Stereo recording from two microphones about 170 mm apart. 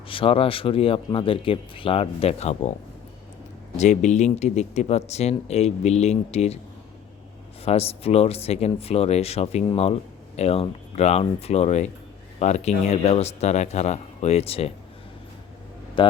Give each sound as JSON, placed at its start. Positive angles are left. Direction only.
{"t": 0.1, "sound": "speech", "side_deg": 30}
{"t": 3.8, "sound": "speech", "side_deg": 45}
{"t": 7.6, "sound": "speech", "side_deg": 35}
{"t": 16.0, "sound": "a man's voice", "side_deg": 30}